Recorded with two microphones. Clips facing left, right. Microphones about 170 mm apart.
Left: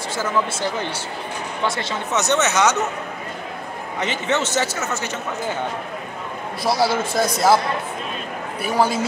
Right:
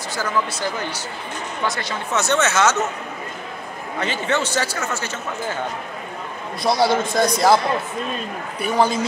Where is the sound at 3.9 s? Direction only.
20° left (ahead or behind).